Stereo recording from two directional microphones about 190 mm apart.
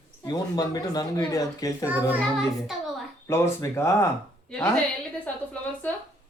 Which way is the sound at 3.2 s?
15° left (ahead or behind).